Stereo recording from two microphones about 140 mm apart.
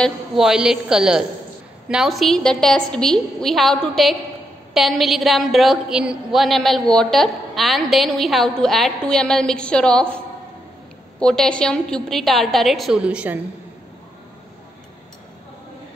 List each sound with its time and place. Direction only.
0.0 s a woman's voice: 5° right (ahead or behind)
11.1 s a woman's voice: 5° left (ahead or behind)